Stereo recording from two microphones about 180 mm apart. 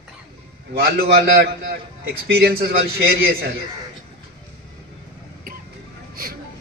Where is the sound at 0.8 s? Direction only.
60° right (ahead or behind).